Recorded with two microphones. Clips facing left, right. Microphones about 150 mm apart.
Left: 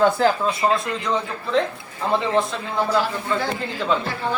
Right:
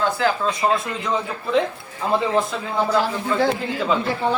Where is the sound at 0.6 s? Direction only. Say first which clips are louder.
Even; centre (ahead or behind).